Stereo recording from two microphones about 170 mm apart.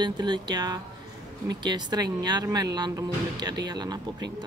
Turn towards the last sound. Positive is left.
turn(degrees=-25)  # may be behind; listen again after turning